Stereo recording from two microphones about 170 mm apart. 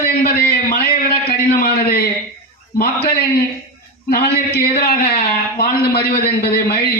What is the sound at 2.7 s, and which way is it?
A man's voice, 60° left (ahead or behind).